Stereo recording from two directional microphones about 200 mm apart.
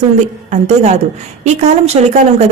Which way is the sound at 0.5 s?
35° right (ahead or behind).